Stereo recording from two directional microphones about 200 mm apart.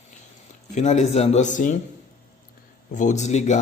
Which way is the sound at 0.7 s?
35° left (ahead or behind).